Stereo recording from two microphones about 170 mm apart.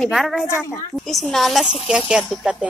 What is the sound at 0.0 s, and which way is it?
Speech, centre (ahead or behind).